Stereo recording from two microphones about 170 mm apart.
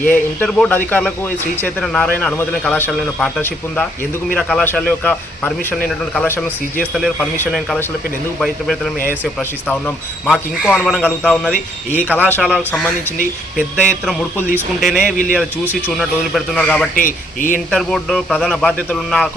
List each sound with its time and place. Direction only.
0.0 s speech: 10° left (ahead or behind)
8.4 s speech: centre (ahead or behind)
10.2 s speech: centre (ahead or behind)
13.8 s speech: centre (ahead or behind)
16.9 s speech: 55° left (ahead or behind)
17.7 s speech: 5° left (ahead or behind)